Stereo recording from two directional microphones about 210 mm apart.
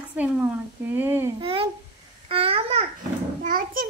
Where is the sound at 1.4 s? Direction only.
25° right (ahead or behind).